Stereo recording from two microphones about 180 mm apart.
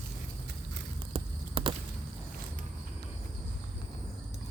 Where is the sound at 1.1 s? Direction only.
30° right (ahead or behind).